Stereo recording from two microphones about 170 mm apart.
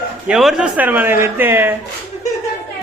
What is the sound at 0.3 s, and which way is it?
A man's voice, 5° right (ahead or behind).